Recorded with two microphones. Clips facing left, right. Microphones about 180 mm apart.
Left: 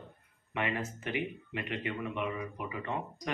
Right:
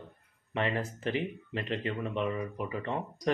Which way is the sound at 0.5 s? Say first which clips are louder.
Right 3 dB; 35° right (ahead or behind).